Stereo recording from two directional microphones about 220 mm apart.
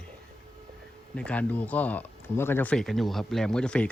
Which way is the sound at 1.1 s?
5° left (ahead or behind).